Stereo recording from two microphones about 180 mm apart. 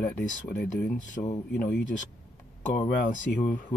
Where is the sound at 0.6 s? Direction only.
50° left (ahead or behind).